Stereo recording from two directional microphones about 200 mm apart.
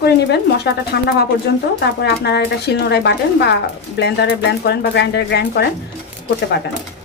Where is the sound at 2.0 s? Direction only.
55° left (ahead or behind).